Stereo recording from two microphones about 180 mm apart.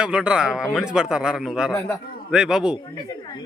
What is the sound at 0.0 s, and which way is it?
A man's voice, 5° right (ahead or behind).